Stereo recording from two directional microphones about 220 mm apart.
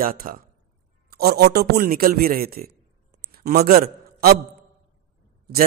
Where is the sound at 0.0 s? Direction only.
40° right (ahead or behind).